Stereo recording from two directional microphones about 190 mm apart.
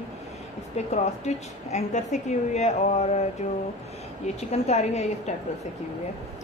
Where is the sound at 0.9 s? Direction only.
35° left (ahead or behind).